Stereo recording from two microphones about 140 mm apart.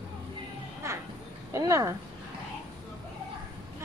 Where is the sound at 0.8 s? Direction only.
20° right (ahead or behind).